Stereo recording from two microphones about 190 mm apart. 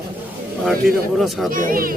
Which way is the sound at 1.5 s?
45° right (ahead or behind).